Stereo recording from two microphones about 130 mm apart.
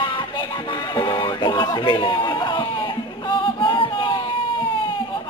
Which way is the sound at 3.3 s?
40° left (ahead or behind).